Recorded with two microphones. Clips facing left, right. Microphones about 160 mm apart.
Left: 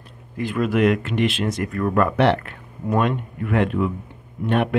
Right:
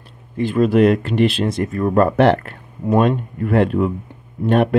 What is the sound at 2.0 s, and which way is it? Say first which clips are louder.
Speech: right 4 dB; 45° right (ahead or behind).